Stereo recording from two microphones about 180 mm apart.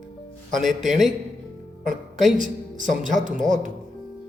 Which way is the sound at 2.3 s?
45° right (ahead or behind).